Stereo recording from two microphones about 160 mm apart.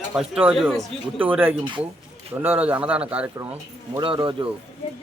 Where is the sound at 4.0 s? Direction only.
30° right (ahead or behind).